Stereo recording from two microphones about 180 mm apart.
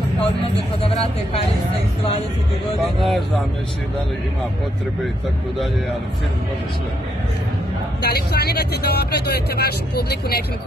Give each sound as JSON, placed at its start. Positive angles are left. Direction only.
{"t": 2.8, "sound": "speech", "side_deg": 0}
{"t": 8.0, "sound": "speech", "side_deg": 60}